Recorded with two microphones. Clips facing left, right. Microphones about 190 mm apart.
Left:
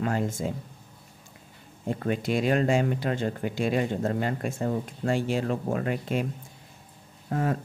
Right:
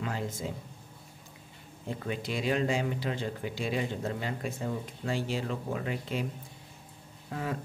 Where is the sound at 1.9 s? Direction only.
50° left (ahead or behind).